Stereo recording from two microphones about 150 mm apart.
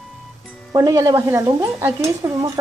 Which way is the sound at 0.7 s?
25° right (ahead or behind).